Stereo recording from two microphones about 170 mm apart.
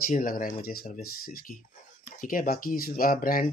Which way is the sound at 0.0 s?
55° left (ahead or behind).